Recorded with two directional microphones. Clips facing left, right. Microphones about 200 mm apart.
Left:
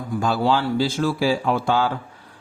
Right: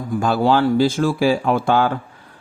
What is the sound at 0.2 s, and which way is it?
Speech, 55° right (ahead or behind).